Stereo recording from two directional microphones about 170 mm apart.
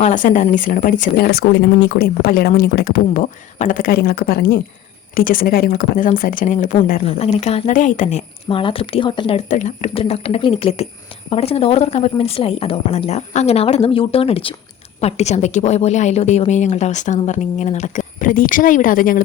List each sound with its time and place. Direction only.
0.0 s a woman's voice: 50° left (ahead or behind)
1.1 s speech: 70° left (ahead or behind); by 7.0 s 50° left (ahead or behind)
7.0 s a woman's voice: 35° left (ahead or behind)
8.4 s speech: 30° left (ahead or behind)
9.5 s a woman's voice: 50° left (ahead or behind)
9.9 s a woman's voice: 35° left (ahead or behind); by 19.2 s 55° left (ahead or behind)